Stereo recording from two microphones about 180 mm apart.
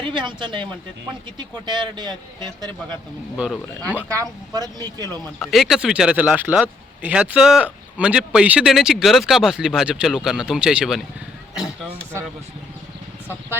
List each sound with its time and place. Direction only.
0.1 s speech: 25° right (ahead or behind)
3.3 s speech: centre (ahead or behind)
4.1 s speech: 20° right (ahead or behind)
5.5 s speech: centre (ahead or behind)